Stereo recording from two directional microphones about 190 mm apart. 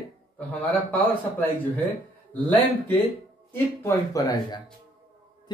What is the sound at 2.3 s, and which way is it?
Speech, 10° left (ahead or behind).